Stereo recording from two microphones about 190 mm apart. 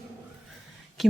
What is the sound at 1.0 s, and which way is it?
Speech, centre (ahead or behind).